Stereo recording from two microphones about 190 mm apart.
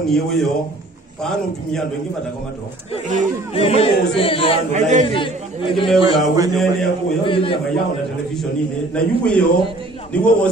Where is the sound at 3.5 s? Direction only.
30° left (ahead or behind).